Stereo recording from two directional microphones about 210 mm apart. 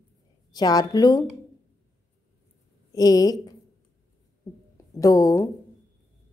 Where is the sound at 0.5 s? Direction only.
20° left (ahead or behind).